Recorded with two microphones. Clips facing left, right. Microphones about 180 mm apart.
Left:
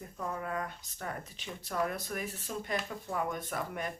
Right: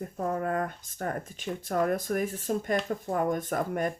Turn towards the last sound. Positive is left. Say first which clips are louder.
# right 8 dB
turn(degrees=-45)  # may be behind; listen again after turning